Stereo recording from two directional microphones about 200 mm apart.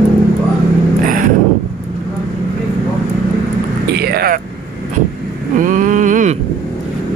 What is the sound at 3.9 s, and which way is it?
Vehicle, 50° right (ahead or behind).